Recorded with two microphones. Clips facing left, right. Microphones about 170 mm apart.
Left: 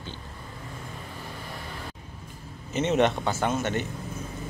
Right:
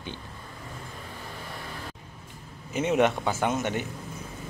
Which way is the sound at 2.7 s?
10° right (ahead or behind).